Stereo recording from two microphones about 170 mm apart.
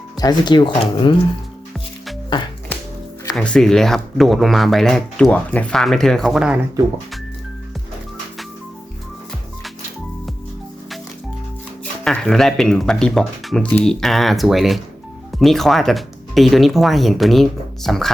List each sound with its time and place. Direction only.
0.2 s speech: 25° left (ahead or behind)
3.3 s speech: 5° left (ahead or behind)
12.0 s speech: centre (ahead or behind)